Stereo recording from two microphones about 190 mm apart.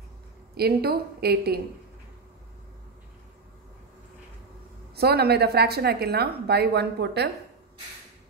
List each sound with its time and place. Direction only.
0.6 s a woman's voice: 55° right (ahead or behind)
4.9 s a woman's voice: 55° right (ahead or behind)